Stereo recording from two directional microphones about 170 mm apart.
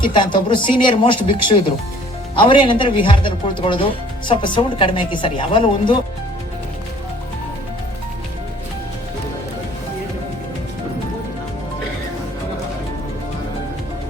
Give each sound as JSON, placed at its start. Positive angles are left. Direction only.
{"t": 0.0, "sound": "speech", "side_deg": 25}